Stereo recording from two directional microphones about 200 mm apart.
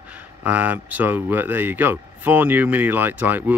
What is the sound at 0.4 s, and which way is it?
Speech, 10° right (ahead or behind).